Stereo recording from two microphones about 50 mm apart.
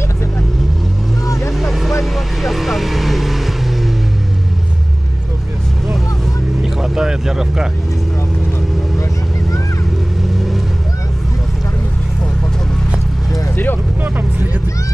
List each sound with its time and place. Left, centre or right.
1.6 s vehicle: centre
6.6 s vehicle: centre
14.0 s vehicle: right